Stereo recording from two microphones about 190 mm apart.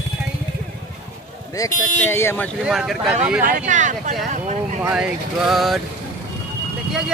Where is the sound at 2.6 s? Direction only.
Centre (ahead or behind).